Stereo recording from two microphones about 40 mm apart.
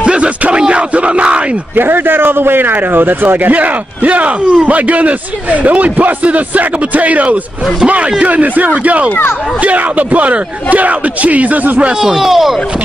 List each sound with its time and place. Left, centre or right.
0.0 s a sound: right
1.8 s a man's voice: right
11.9 s speech: centre